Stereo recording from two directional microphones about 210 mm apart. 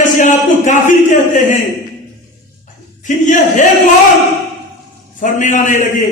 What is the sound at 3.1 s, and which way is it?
Speech, 35° left (ahead or behind).